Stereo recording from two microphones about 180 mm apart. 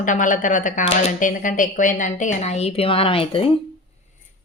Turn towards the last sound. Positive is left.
turn(degrees=30)  # may be behind; listen again after turning